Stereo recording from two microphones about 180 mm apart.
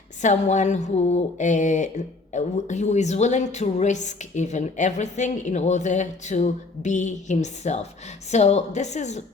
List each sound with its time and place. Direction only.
0.2 s speech: 40° left (ahead or behind)